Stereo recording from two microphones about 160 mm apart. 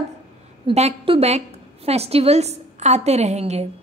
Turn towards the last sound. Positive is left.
turn(degrees=-45)  # may be behind; listen again after turning